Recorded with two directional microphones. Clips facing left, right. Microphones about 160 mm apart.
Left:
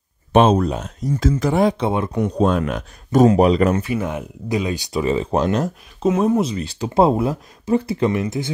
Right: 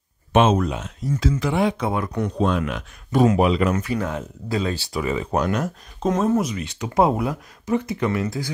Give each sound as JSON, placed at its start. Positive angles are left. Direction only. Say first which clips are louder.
{"t": 0.3, "sound": "speech", "louder": "left 3 dB", "side_deg": 35}
{"t": 1.9, "sound": "speech", "louder": "left 4 dB", "side_deg": 25}
{"t": 2.3, "sound": "speech", "louder": "left 4 dB", "side_deg": 40}
{"t": 3.9, "sound": "speech", "louder": "left 2 dB", "side_deg": 15}
{"t": 6.0, "sound": "speech", "louder": "left 3 dB", "side_deg": 10}
{"t": 6.4, "sound": "speech", "louder": "left 4 dB", "side_deg": 30}